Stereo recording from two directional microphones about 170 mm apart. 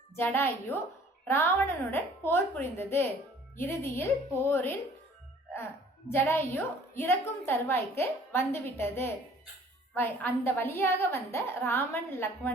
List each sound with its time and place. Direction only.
0.2 s a woman's voice: 10° left (ahead or behind)
6.1 s a woman's voice: 15° left (ahead or behind)